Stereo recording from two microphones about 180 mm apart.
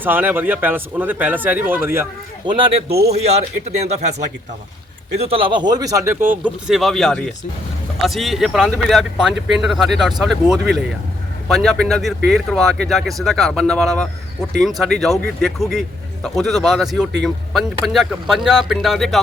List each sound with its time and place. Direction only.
0.0 s speech: 10° right (ahead or behind)
2.5 s speech: 30° right (ahead or behind)
5.1 s speech: 35° right (ahead or behind); by 6.3 s 15° right (ahead or behind)
6.4 s speech: centre (ahead or behind)